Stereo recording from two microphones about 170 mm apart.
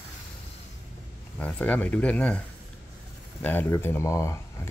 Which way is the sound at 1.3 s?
10° left (ahead or behind).